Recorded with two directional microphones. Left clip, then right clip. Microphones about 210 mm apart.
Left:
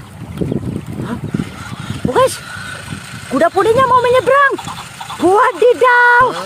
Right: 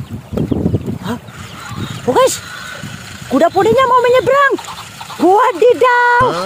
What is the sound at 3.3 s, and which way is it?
Speech, 15° right (ahead or behind).